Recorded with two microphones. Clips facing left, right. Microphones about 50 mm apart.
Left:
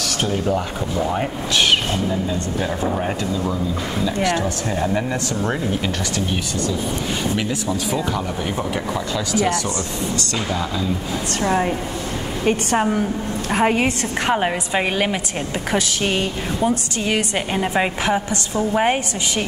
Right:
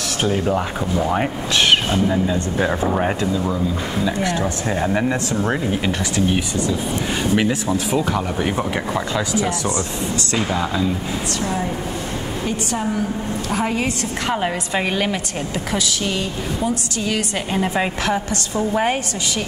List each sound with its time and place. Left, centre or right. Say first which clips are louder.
0.2 s speech: right 2 dB; centre
1.7 s speech: right 2 dB; right
10.3 s speech: right 3 dB; centre
11.4 s a woman's voice: left 7 dB; left
13.5 s a woman's voice: left 4 dB; left
14.3 s a woman's voice: left 1 dB; centre
15.7 s a woman's voice: left 3 dB; left
17.6 s a woman's voice: even; centre